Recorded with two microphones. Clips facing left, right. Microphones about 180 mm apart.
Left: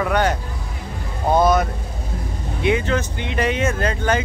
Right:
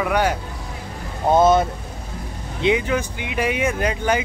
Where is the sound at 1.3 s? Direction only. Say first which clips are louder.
Right 1 dB; 25° right (ahead or behind).